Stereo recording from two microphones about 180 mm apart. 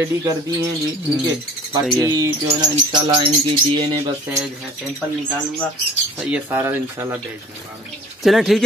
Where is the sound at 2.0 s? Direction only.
20° right (ahead or behind).